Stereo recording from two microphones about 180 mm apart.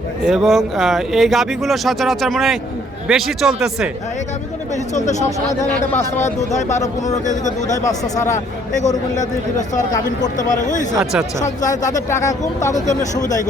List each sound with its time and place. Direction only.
0.3 s speech: centre (ahead or behind)
4.7 s speech: 40° left (ahead or behind)
5.9 s speech: 15° left (ahead or behind)
6.2 s speech: 40° left (ahead or behind)
7.9 s speech: 20° left (ahead or behind)
8.3 s speech: 40° left (ahead or behind)
10.9 s speech: centre (ahead or behind)
11.3 s speech: 40° left (ahead or behind)
12.0 s speech: 15° left (ahead or behind)
12.8 s speech: 40° left (ahead or behind)